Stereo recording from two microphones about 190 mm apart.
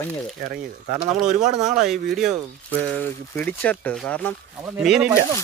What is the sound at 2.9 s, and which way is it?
Speech, 10° left (ahead or behind).